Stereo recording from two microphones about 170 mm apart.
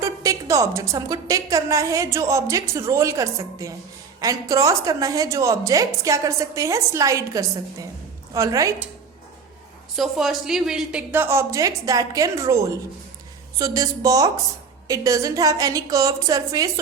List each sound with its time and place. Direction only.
0.0 s a woman's voice: 20° right (ahead or behind)
9.9 s a woman's voice: centre (ahead or behind); by 16.8 s 20° right (ahead or behind)